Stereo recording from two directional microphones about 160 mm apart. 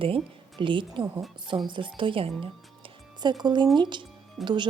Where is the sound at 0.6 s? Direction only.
30° right (ahead or behind).